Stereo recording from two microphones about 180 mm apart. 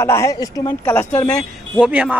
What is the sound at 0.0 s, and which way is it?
Speech, 15° left (ahead or behind).